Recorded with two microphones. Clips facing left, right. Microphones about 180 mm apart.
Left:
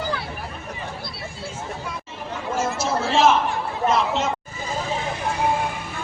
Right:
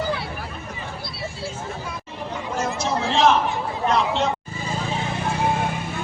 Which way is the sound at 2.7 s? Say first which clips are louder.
Left 1 dB; 5° left (ahead or behind).